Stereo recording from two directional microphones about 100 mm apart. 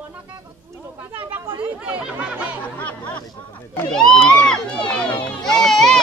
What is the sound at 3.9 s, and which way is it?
Speech, 5° left (ahead or behind).